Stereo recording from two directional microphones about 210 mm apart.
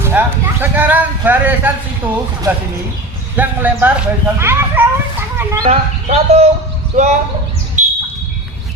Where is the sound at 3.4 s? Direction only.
10° right (ahead or behind).